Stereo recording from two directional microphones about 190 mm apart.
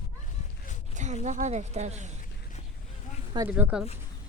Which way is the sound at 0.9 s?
40° right (ahead or behind).